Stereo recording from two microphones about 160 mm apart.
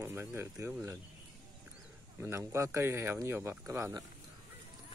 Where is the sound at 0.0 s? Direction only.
15° right (ahead or behind).